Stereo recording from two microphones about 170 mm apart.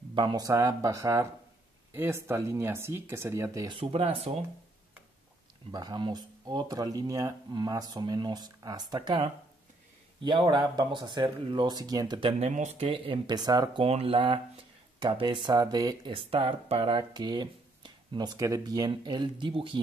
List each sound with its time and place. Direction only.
0.1 s speech: 25° right (ahead or behind)
5.7 s speech: 25° right (ahead or behind)
12.4 s speech: 45° right (ahead or behind); by 13.8 s 20° right (ahead or behind)
13.8 s speech: 35° right (ahead or behind)